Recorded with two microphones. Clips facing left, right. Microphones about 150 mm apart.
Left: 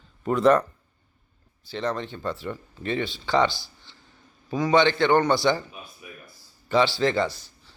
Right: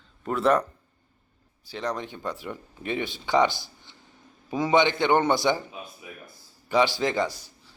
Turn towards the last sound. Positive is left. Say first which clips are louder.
# left 2 dB
turn(degrees=-10)  # may be behind; listen again after turning